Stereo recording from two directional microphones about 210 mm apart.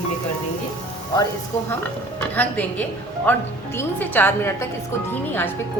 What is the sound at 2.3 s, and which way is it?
Speech, 10° left (ahead or behind).